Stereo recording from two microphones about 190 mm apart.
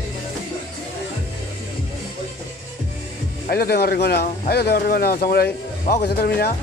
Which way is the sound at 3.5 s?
55° left (ahead or behind).